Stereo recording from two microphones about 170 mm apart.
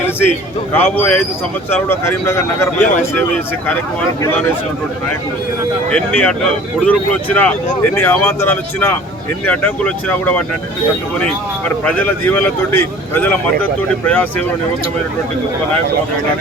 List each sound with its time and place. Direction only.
0.2 s speech: 10° left (ahead or behind)
5.9 s speech: 10° left (ahead or behind)
11.9 s speech: 10° left (ahead or behind)